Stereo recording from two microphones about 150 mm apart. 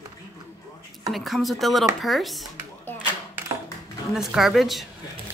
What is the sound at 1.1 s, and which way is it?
Speech, centre (ahead or behind).